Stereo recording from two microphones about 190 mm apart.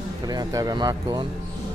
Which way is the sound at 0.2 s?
20° right (ahead or behind).